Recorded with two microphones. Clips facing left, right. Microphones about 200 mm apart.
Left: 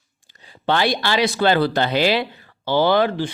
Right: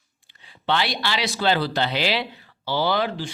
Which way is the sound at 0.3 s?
40° left (ahead or behind).